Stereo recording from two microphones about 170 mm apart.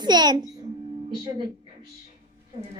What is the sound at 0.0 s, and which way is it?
Speech, 25° right (ahead or behind).